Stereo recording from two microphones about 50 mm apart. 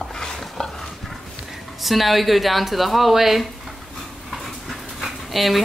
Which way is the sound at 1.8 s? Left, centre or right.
Centre.